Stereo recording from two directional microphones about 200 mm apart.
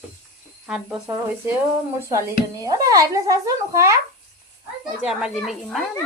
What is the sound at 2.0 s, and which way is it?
A woman's voice, 15° right (ahead or behind).